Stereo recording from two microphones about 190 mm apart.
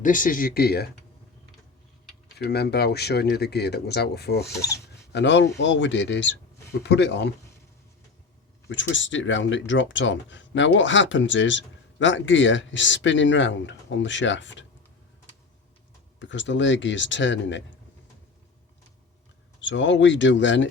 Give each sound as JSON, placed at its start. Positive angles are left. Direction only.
{"t": 0.0, "sound": "speech", "side_deg": 45}
{"t": 2.4, "sound": "speech", "side_deg": 60}
{"t": 4.5, "sound": "speech", "side_deg": 15}
{"t": 5.1, "sound": "speech", "side_deg": 70}
{"t": 8.7, "sound": "speech", "side_deg": 80}
{"t": 16.3, "sound": "speech", "side_deg": 75}
{"t": 19.6, "sound": "speech", "side_deg": 75}